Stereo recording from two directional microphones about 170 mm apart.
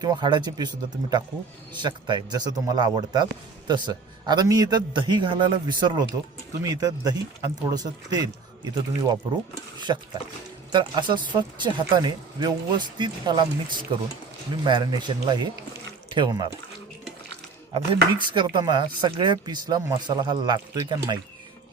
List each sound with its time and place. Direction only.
0.0 s speech: 25° right (ahead or behind)
17.7 s speech: 30° right (ahead or behind)